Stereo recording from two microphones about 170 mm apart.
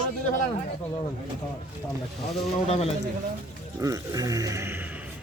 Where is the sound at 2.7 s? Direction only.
35° left (ahead or behind).